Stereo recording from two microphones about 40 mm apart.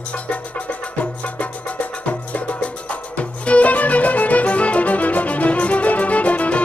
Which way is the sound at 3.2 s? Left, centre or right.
Left.